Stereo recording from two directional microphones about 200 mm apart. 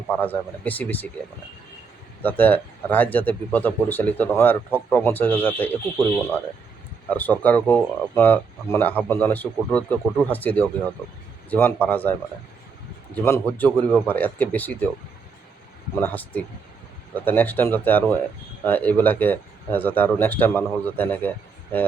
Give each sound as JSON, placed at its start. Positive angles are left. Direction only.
{"t": 0.1, "sound": "speech", "side_deg": 10}
{"t": 2.2, "sound": "speech", "side_deg": 10}
{"t": 13.1, "sound": "speech", "side_deg": 10}
{"t": 16.0, "sound": "speech", "side_deg": 10}